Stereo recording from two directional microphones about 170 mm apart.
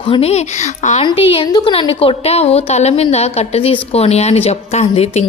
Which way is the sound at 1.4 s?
25° left (ahead or behind).